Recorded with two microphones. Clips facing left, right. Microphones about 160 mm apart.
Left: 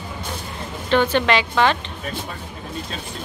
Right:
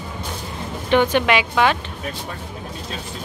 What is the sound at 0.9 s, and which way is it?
Speech, 15° right (ahead or behind).